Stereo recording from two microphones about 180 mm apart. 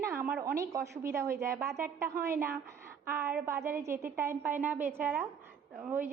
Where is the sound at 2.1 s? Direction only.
55° right (ahead or behind).